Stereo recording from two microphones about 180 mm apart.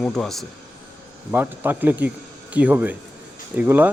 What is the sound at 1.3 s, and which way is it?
Speech, 10° right (ahead or behind).